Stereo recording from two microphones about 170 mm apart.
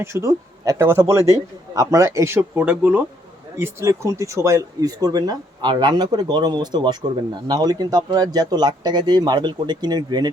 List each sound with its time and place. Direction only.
0.0 s a man's voice: 15° right (ahead or behind)